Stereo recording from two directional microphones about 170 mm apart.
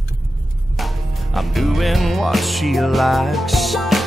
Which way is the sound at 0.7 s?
Centre (ahead or behind).